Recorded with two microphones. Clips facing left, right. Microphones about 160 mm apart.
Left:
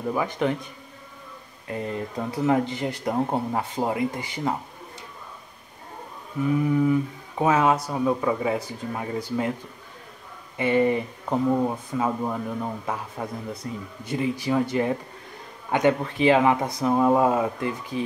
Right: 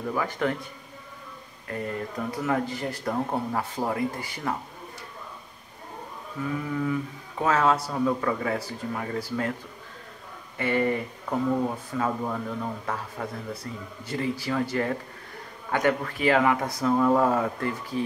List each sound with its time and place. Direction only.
0.0 s speech: 20° left (ahead or behind)
1.7 s speech: 20° left (ahead or behind)
6.4 s speech: 20° left (ahead or behind)
10.6 s speech: 15° left (ahead or behind)